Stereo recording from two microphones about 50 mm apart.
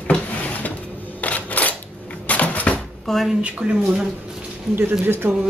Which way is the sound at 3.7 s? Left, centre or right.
Centre.